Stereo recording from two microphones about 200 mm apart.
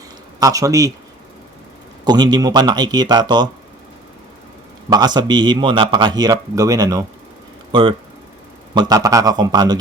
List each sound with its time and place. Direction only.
0.3 s a man's voice: 15° right (ahead or behind)
2.0 s speech: 20° right (ahead or behind)
4.9 s speech: 20° right (ahead or behind)